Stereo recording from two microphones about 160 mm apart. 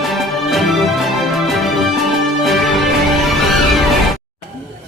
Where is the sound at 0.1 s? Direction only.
Centre (ahead or behind).